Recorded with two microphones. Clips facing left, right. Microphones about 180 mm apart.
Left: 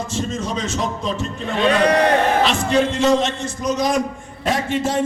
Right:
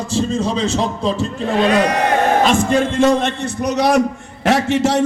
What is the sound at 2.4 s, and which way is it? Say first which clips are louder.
A man's voice: right 3 dB; 50° right (ahead or behind).